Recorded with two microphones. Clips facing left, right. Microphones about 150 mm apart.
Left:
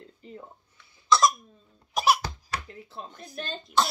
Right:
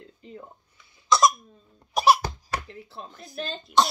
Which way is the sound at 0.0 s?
35° left (ahead or behind).